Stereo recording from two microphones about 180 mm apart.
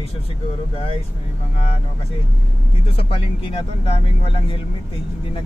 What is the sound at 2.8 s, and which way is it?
Speech, 30° left (ahead or behind).